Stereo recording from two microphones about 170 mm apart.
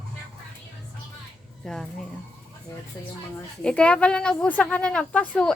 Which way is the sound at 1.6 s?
5° left (ahead or behind).